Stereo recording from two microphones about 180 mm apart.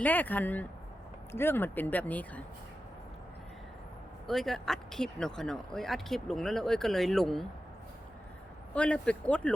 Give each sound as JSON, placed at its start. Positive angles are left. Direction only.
{"t": 0.0, "sound": "speech", "side_deg": 10}
{"t": 4.3, "sound": "speech", "side_deg": 0}
{"t": 8.7, "sound": "speech", "side_deg": 5}